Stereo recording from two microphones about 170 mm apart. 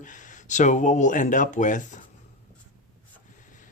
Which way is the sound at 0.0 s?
50° left (ahead or behind).